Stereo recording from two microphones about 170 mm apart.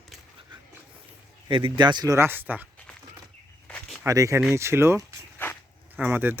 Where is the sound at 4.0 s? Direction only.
20° right (ahead or behind).